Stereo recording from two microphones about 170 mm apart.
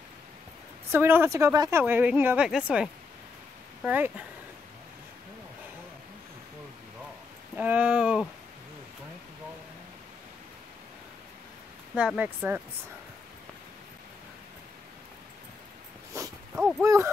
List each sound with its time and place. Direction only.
0.9 s speech: 15° right (ahead or behind)
7.5 s speech: 10° right (ahead or behind)
11.9 s speech: 5° right (ahead or behind)
16.1 s dog: 20° right (ahead or behind)
16.5 s speech: centre (ahead or behind)
16.8 s speech: 15° right (ahead or behind)